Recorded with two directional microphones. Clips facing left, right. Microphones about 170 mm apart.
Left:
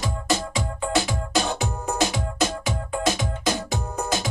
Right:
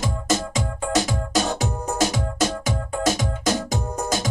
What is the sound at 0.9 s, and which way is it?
Music, 40° right (ahead or behind).